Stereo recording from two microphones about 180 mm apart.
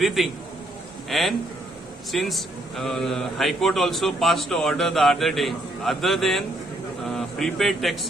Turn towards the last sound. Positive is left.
turn(degrees=0)  # may be behind; listen again after turning